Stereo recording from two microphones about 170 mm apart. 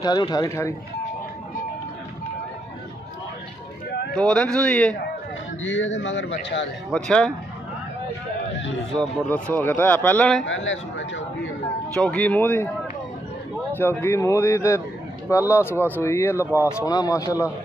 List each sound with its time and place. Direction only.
0.0 s speech: 20° left (ahead or behind)
4.1 s speech: 5° left (ahead or behind)
5.8 s speech: 90° left
6.9 s speech: 5° left (ahead or behind)
8.9 s speech: 5° left (ahead or behind)
10.4 s speech: 90° left
11.9 s speech: 5° left (ahead or behind)
13.7 s speech: 15° left (ahead or behind)
15.7 s speech: 10° right (ahead or behind)
16.0 s speech: 15° left (ahead or behind)